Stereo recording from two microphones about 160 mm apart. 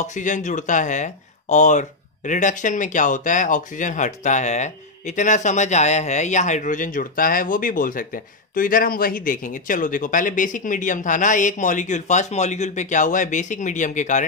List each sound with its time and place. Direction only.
0.0 s speech: 50° left (ahead or behind)